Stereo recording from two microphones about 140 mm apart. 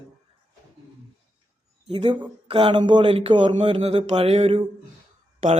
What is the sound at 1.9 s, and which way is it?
A man's voice, 35° right (ahead or behind).